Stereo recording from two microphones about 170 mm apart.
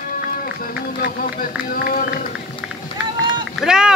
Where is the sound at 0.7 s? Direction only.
60° left (ahead or behind).